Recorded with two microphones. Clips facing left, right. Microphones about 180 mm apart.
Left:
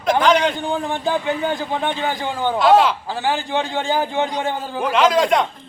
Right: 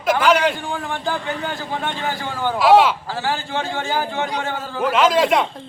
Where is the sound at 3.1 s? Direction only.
15° left (ahead or behind).